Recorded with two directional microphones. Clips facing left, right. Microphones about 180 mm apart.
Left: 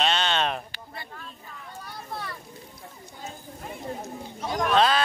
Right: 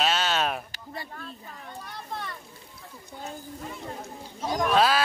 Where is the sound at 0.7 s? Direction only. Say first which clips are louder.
Right 2 dB; 40° right (ahead or behind).